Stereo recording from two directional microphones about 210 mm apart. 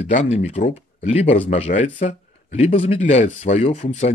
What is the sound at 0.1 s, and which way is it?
Speech, 35° left (ahead or behind).